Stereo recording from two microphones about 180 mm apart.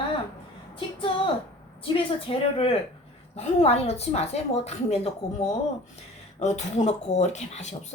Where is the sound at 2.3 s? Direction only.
30° left (ahead or behind).